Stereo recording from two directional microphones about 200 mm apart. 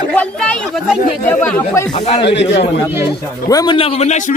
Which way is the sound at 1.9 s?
30° left (ahead or behind).